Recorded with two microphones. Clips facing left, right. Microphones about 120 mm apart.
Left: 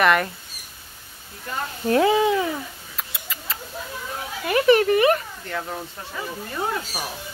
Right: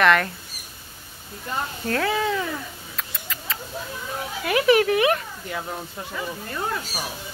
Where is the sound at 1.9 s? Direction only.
20° left (ahead or behind).